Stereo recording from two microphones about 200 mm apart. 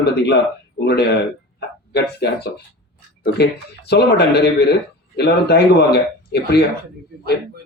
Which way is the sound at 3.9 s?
55° left (ahead or behind).